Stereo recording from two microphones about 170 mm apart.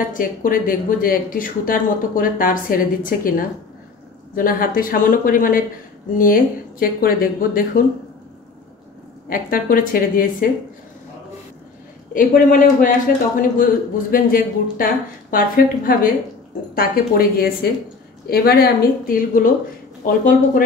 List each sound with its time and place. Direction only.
0.1 s speech: 55° left (ahead or behind)
9.3 s speech: 55° left (ahead or behind)
12.1 s a man's voice: 50° left (ahead or behind)